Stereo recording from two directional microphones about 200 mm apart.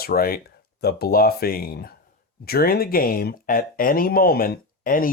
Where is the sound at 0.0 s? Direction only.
50° left (ahead or behind).